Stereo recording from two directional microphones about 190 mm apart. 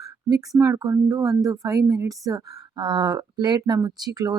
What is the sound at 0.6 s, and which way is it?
Speech, 15° right (ahead or behind).